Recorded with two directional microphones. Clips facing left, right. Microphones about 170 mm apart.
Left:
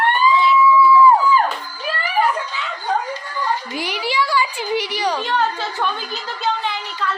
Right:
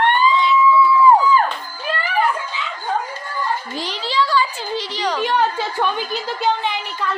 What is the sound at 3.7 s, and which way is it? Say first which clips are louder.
A woman's voice: even; 10° left (ahead or behind).